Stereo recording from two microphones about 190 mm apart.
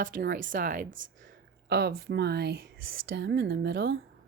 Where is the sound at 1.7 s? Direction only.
60° right (ahead or behind).